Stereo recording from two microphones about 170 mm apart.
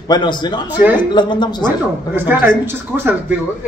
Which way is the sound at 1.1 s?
25° left (ahead or behind).